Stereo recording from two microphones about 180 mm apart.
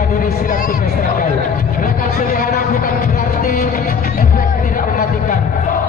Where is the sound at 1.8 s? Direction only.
55° left (ahead or behind).